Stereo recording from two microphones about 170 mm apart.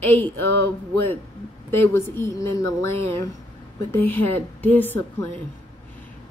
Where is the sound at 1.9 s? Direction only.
15° left (ahead or behind).